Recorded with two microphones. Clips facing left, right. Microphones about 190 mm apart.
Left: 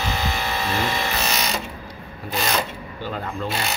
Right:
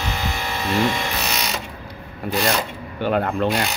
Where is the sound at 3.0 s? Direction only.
65° right (ahead or behind).